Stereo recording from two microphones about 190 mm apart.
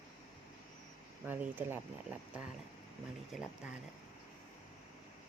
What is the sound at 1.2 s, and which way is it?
Speech, 10° right (ahead or behind).